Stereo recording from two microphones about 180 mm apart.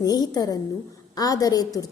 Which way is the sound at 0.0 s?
20° left (ahead or behind).